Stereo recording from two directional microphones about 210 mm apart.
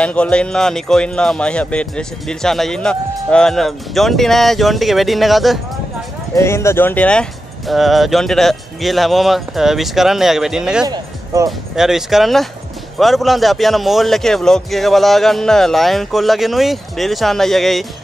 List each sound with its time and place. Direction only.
0.0 s speech: 5° left (ahead or behind)
6.3 s speech: 15° left (ahead or behind); by 10.9 s 5° right (ahead or behind)
10.9 s speech: 20° right (ahead or behind)
11.7 s speech: centre (ahead or behind)